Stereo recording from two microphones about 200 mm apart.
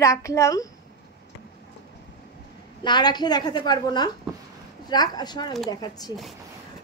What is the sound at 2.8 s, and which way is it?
A woman's voice, 20° left (ahead or behind).